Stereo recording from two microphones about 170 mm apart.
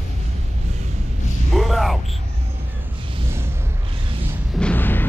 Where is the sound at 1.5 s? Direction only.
Centre (ahead or behind).